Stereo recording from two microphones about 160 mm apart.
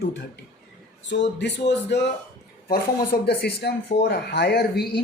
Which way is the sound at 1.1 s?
90° left.